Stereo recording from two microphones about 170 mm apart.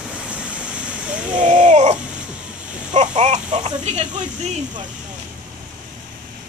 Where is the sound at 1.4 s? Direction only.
45° right (ahead or behind).